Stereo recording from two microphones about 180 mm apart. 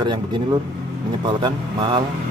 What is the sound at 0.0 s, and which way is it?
Speech, 25° right (ahead or behind).